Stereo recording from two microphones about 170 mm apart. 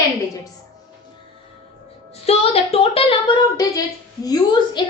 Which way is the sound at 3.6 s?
20° left (ahead or behind).